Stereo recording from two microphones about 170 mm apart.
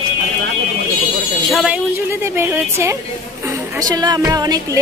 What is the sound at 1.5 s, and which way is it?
Speech, 5° right (ahead or behind).